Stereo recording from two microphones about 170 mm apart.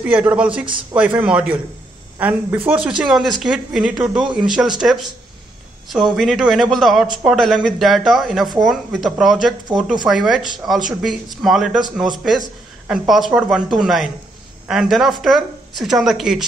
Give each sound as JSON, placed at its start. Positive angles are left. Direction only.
{"t": 0.0, "sound": "a woman's voice", "side_deg": -10}
{"t": 10.4, "sound": "speech", "side_deg": -25}
{"t": 10.9, "sound": "a man's voice", "side_deg": 0}
{"t": 12.8, "sound": "a man's voice", "side_deg": -5}